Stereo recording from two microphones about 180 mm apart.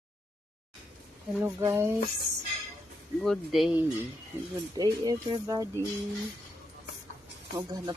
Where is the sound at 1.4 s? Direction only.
15° right (ahead or behind).